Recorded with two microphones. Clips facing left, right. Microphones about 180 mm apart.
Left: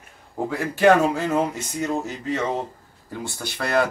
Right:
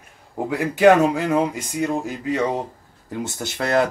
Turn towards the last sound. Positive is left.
turn(degrees=-20)  # may be behind; listen again after turning